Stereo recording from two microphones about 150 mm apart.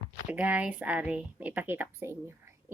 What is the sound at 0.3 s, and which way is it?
Speech, 10° right (ahead or behind).